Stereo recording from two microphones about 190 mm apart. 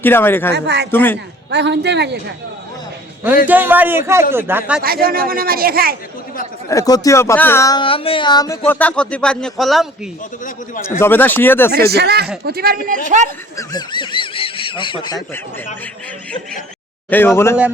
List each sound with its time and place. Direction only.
0.0 s speech: 10° left (ahead or behind)
0.5 s speech: 65° right (ahead or behind)
0.9 s speech: 10° left (ahead or behind)
1.5 s speech: 65° right (ahead or behind)
3.4 s a man's voice: 10° right (ahead or behind)
4.8 s speech: 50° right (ahead or behind)
6.7 s speech: 20° left (ahead or behind); by 9.8 s centre (ahead or behind)
11.0 s speech: 10° left (ahead or behind)
11.7 s speech: 55° right (ahead or behind)
13.6 s speech: 25° left (ahead or behind)
17.1 s speech: 10° left (ahead or behind)